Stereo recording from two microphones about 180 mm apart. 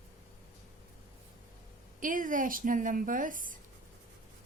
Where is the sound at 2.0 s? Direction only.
50° right (ahead or behind).